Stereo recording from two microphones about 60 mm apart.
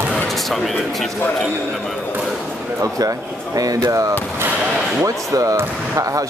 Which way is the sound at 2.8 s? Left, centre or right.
Right.